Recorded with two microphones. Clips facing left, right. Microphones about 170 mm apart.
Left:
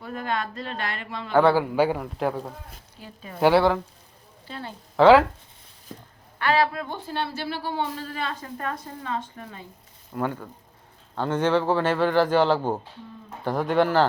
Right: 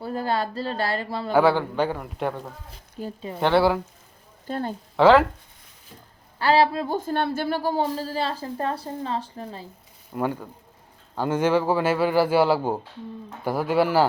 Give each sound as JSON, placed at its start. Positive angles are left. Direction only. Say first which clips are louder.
{"t": 0.0, "sound": "a woman's voice", "louder": "right 4 dB", "side_deg": -35}
{"t": 1.3, "sound": "speech", "louder": "even", "side_deg": -5}
{"t": 1.5, "sound": "speech", "louder": "left 3 dB", "side_deg": 10}
{"t": 3.0, "sound": "speech", "louder": "right 12 dB", "side_deg": -45}
{"t": 3.4, "sound": "speech", "louder": "left 1 dB", "side_deg": 0}
{"t": 4.4, "sound": "speech", "louder": "right 8 dB", "side_deg": -50}
{"t": 4.9, "sound": "speech", "louder": "left 1 dB", "side_deg": 0}
{"t": 6.4, "sound": "a woman's voice", "louder": "right 3 dB", "side_deg": -30}
{"t": 6.9, "sound": "a woman's voice", "louder": "right 6 dB", "side_deg": -50}
{"t": 10.1, "sound": "speech", "louder": "right 2 dB", "side_deg": -15}